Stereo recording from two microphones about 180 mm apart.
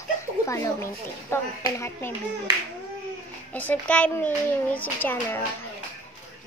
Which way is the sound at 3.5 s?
10° left (ahead or behind).